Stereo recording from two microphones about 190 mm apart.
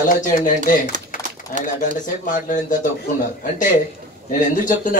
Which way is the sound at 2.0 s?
40° left (ahead or behind).